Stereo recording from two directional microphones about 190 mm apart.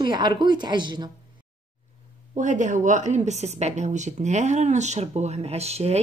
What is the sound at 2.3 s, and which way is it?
A woman's voice, 40° right (ahead or behind).